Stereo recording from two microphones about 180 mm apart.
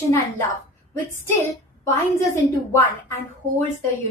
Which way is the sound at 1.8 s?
15° left (ahead or behind).